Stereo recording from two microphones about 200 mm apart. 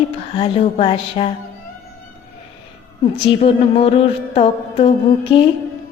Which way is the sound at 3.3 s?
30° left (ahead or behind).